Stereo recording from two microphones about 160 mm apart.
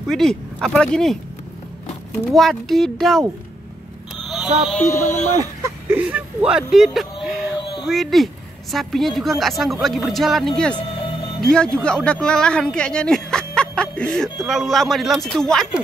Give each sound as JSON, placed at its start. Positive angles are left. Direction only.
{"t": 0.1, "sound": "a woman's voice", "side_deg": 5}
{"t": 2.1, "sound": "a woman's voice", "side_deg": 0}
{"t": 4.1, "sound": "a sound", "side_deg": -5}
{"t": 4.7, "sound": "speech", "side_deg": 20}
{"t": 5.4, "sound": "a woman's voice", "side_deg": -15}